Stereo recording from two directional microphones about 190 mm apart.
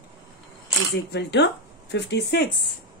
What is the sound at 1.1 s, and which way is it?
Speech, 60° left (ahead or behind).